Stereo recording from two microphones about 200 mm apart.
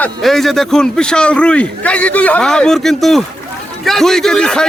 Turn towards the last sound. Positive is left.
turn(degrees=5)  # may be behind; listen again after turning